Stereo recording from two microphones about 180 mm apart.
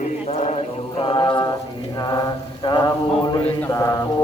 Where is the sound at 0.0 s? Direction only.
40° left (ahead or behind).